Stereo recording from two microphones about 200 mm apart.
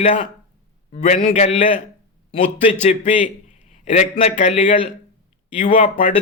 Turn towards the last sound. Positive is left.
turn(degrees=40)  # may be behind; listen again after turning